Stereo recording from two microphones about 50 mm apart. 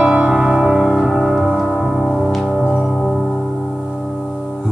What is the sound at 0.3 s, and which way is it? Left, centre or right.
Music, centre.